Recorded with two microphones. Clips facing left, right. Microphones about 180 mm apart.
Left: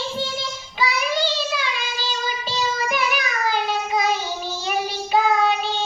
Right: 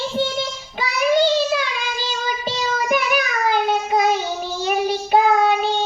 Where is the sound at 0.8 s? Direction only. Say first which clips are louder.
Right 5 dB; 50° right (ahead or behind).